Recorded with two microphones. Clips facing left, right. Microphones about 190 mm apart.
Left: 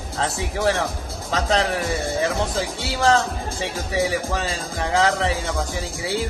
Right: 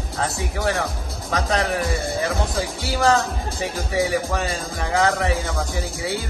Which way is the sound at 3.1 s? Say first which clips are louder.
Left 1 dB; 25° left (ahead or behind).